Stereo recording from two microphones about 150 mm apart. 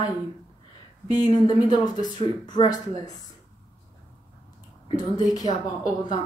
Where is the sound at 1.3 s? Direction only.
30° left (ahead or behind).